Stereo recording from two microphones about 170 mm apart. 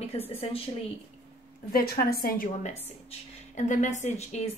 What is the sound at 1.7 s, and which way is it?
Speech, 65° left (ahead or behind).